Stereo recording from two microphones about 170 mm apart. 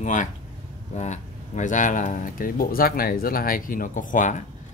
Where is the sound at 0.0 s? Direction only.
45° left (ahead or behind).